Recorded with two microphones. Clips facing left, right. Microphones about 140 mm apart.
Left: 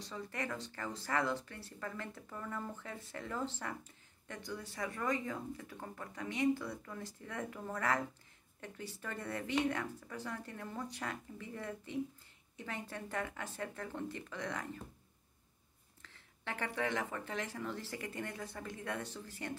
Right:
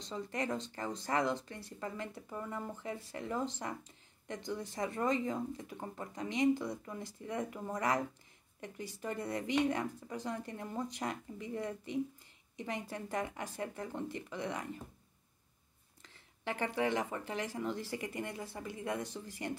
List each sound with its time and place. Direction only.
0.0 s speech: 20° right (ahead or behind)
16.0 s speech: 15° right (ahead or behind)